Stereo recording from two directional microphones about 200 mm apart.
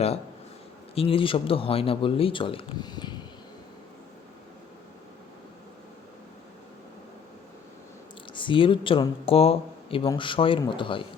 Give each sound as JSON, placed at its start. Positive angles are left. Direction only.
{"t": 0.9, "sound": "speech", "side_deg": 25}
{"t": 8.3, "sound": "speech", "side_deg": 25}